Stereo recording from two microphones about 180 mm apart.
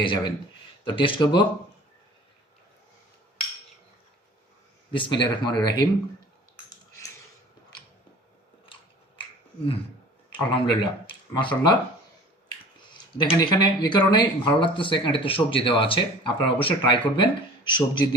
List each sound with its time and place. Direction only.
0.0 s speech: 25° left (ahead or behind)
4.9 s speech: 25° left (ahead or behind)
8.7 s biting: 30° left (ahead or behind)
9.2 s finger snapping: 30° left (ahead or behind)
10.3 s speech: 25° left (ahead or behind)
13.1 s speech: 25° left (ahead or behind)